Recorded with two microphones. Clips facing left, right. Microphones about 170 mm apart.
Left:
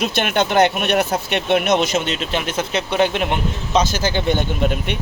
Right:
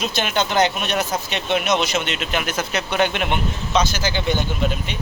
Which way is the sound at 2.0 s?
35° left (ahead or behind).